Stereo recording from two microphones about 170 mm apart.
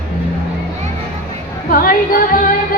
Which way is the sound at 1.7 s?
55° left (ahead or behind).